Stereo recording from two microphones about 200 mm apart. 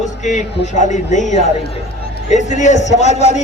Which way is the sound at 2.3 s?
35° left (ahead or behind).